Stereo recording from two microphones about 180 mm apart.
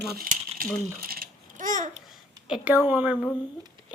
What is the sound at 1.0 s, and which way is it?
Babbling, 55° right (ahead or behind).